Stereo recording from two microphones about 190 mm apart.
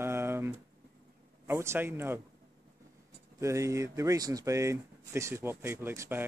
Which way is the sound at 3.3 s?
15° right (ahead or behind).